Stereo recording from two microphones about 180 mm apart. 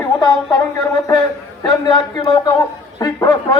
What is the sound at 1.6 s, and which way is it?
A man's voice, 25° left (ahead or behind).